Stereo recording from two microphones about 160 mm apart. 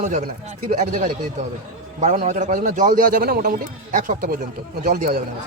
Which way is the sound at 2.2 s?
50° right (ahead or behind).